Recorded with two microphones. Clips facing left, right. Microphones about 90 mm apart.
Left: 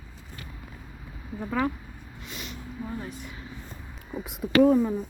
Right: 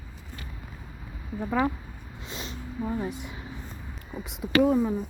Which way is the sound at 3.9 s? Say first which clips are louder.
Left 4 dB; centre (ahead or behind).